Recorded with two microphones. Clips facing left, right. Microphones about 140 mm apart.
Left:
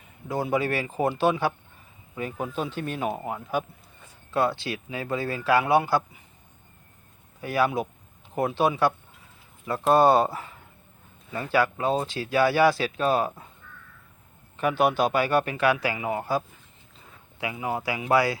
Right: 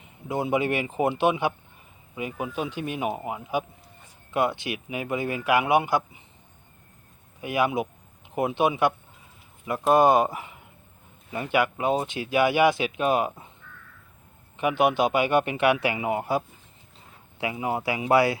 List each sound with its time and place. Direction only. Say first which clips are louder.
0.3 s a man's voice: right 1 dB; 20° right (ahead or behind)
7.4 s a man's voice: even; 15° right (ahead or behind)
14.5 s a man's voice: right 1 dB; 15° right (ahead or behind)
17.4 s a man's voice: right 2 dB; 25° right (ahead or behind)